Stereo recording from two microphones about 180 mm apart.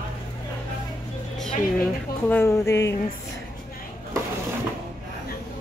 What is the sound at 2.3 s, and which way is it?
Speech, 15° left (ahead or behind).